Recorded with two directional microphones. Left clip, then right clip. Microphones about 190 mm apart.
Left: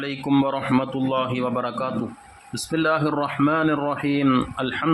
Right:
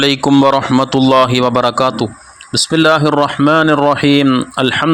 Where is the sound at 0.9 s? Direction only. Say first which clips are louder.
Right 14 dB; 55° right (ahead or behind).